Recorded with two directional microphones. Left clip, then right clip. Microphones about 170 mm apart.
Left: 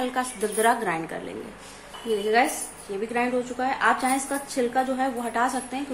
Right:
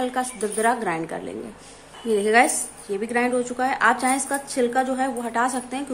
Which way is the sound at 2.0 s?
35° right (ahead or behind).